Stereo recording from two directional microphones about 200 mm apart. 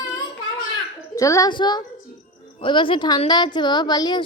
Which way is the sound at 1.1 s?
15° left (ahead or behind).